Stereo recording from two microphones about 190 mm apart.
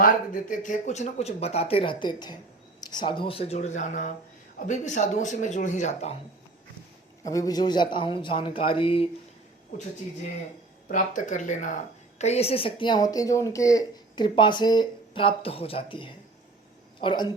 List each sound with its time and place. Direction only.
0.0 s speech: 45° left (ahead or behind)
7.3 s a woman's voice: 20° left (ahead or behind)
10.8 s a woman's voice: 40° left (ahead or behind); by 17.2 s 25° left (ahead or behind)